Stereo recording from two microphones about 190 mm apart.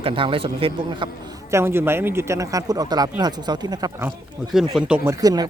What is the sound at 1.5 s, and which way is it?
A man's voice, 10° right (ahead or behind).